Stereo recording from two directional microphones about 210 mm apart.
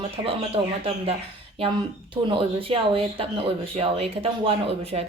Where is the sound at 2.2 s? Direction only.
25° right (ahead or behind).